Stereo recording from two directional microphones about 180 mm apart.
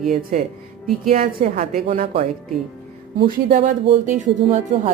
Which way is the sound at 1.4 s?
40° right (ahead or behind).